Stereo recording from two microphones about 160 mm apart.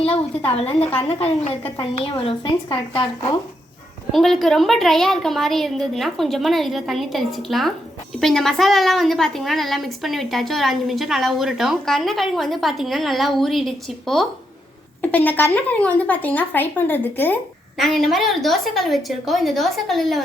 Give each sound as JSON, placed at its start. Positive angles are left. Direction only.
{"t": 0.5, "sound": "a woman's voice", "side_deg": 40}
{"t": 4.1, "sound": "a woman's voice", "side_deg": 0}
{"t": 17.7, "sound": "a woman's voice", "side_deg": 0}